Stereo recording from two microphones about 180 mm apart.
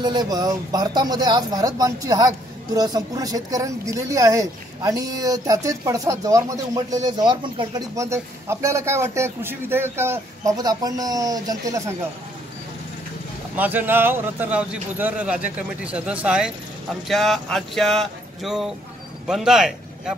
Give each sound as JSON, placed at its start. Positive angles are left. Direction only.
{"t": 0.0, "sound": "speech", "side_deg": -25}
{"t": 13.6, "sound": "a man's voice", "side_deg": -10}